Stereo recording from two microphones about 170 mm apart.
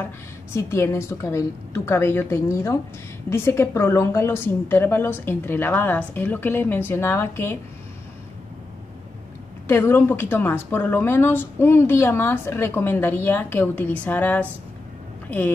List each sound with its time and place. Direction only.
0.5 s speech: 15° left (ahead or behind)
9.7 s speech: 15° left (ahead or behind)